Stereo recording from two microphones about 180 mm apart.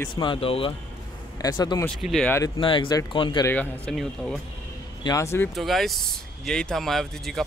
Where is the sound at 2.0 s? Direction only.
Centre (ahead or behind).